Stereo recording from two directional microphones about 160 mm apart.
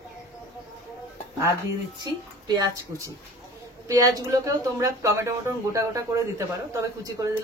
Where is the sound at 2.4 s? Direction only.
25° right (ahead or behind).